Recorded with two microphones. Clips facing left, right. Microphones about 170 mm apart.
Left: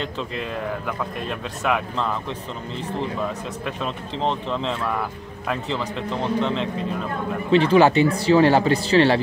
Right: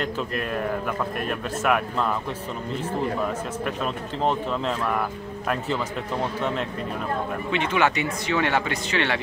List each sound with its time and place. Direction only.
1.6 s speech: 5° right (ahead or behind)
3.8 s speech: 5° right (ahead or behind)
7.5 s speech: 35° left (ahead or behind)